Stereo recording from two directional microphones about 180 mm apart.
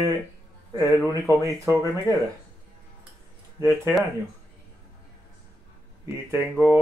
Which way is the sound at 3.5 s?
15° right (ahead or behind).